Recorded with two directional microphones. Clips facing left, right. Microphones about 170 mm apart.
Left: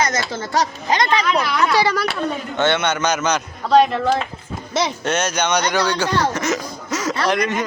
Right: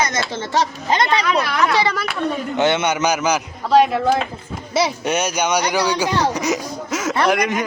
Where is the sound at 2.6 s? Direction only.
15° right (ahead or behind).